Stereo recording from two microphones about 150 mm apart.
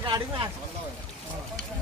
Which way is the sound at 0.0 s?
30° right (ahead or behind).